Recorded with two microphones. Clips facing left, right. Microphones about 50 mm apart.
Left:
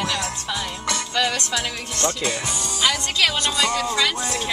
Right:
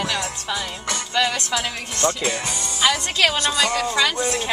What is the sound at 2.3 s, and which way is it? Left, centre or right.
Speech, right.